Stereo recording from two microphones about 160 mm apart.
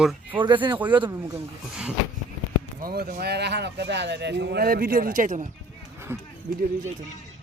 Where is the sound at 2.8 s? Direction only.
75° right (ahead or behind); by 5.4 s 55° right (ahead or behind).